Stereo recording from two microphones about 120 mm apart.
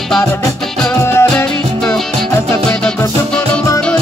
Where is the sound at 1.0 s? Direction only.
20° left (ahead or behind).